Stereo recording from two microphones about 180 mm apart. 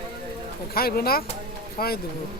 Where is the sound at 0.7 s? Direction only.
55° left (ahead or behind).